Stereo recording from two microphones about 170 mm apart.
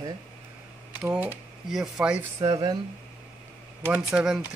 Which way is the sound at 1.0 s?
10° right (ahead or behind).